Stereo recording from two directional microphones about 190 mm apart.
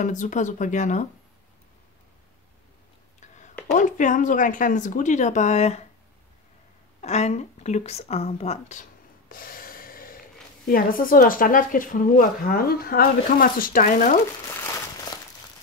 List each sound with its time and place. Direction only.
0.0 s speech: 40° left (ahead or behind)
3.2 s a sound: 40° left (ahead or behind)
3.7 s speech: 40° left (ahead or behind)
7.0 s speech: 35° left (ahead or behind)
9.3 s snort: 50° left (ahead or behind)
10.7 s speech: 50° left (ahead or behind)